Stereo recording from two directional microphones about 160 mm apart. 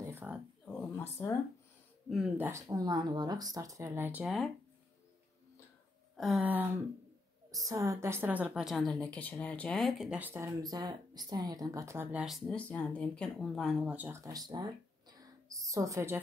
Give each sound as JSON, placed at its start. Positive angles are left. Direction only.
{"t": 0.0, "sound": "a sound", "side_deg": -10}
{"t": 0.7, "sound": "a sound", "side_deg": 10}
{"t": 2.0, "sound": "speech", "side_deg": -5}
{"t": 4.2, "sound": "speech", "side_deg": 0}
{"t": 6.1, "sound": "speech", "side_deg": 0}
{"t": 6.4, "sound": "a woman's voice", "side_deg": -10}